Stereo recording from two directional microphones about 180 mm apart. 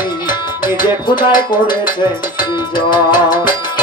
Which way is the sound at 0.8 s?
25° left (ahead or behind).